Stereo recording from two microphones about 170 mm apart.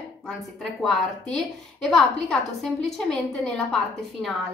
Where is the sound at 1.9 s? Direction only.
Centre (ahead or behind).